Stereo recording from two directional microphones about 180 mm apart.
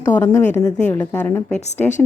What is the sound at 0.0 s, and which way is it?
Speech, 20° left (ahead or behind).